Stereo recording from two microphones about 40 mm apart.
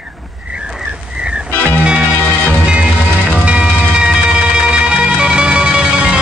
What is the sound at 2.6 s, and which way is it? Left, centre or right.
Music, right.